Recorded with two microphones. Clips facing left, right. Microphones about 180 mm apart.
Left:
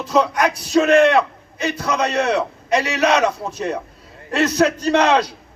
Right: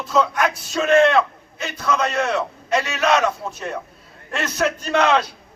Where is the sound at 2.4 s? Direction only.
15° left (ahead or behind).